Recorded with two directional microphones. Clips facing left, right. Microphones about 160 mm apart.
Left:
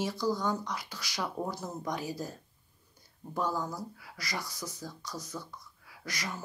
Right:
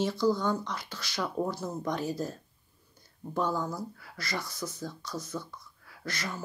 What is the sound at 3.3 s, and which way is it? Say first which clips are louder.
Speech: right 2 dB; 10° left (ahead or behind).